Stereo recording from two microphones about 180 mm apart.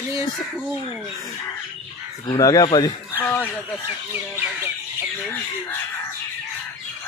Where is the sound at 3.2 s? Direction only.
10° left (ahead or behind).